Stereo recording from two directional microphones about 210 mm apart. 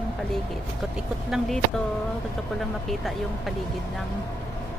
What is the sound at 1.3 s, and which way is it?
Speech, centre (ahead or behind).